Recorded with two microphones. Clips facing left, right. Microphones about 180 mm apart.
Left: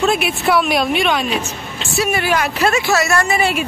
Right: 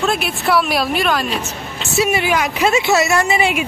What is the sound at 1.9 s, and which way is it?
Speech, 20° right (ahead or behind).